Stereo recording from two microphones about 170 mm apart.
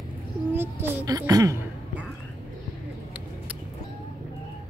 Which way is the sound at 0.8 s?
20° right (ahead or behind).